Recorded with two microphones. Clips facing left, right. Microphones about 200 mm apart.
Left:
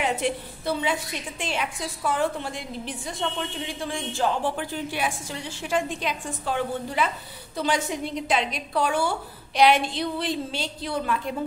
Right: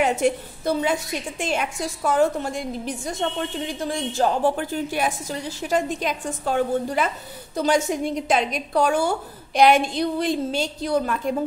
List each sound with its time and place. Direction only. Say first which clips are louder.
0.0 s a woman's voice: right 5 dB; 45° right (ahead or behind)